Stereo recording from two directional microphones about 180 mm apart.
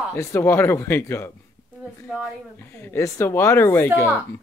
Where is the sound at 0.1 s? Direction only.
15° left (ahead or behind).